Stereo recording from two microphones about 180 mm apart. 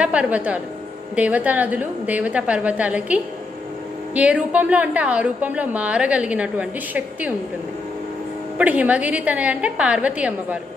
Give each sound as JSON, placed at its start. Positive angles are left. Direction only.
{"t": 0.0, "sound": "a woman's voice", "side_deg": -5}
{"t": 8.5, "sound": "a woman's voice", "side_deg": -10}